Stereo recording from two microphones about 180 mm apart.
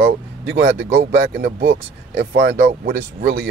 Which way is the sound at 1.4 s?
70° right (ahead or behind).